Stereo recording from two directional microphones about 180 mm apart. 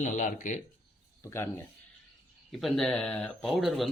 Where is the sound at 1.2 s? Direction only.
15° left (ahead or behind).